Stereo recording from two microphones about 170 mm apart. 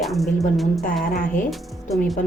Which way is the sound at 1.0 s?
55° left (ahead or behind).